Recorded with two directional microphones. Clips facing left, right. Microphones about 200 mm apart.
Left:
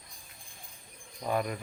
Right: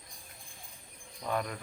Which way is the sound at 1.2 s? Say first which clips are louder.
Left 3 dB; 10° left (ahead or behind).